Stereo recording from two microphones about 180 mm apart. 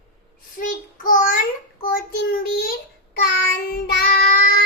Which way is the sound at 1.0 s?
50° left (ahead or behind).